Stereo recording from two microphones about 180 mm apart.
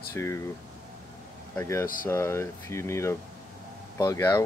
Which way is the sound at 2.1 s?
15° left (ahead or behind).